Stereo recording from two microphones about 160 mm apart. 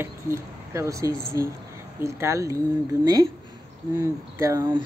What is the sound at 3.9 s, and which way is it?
Speech, 20° right (ahead or behind).